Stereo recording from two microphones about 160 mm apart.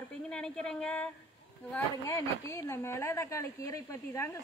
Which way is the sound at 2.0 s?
20° left (ahead or behind).